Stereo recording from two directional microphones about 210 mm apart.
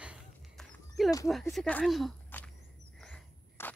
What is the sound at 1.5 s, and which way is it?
Speech, 5° left (ahead or behind).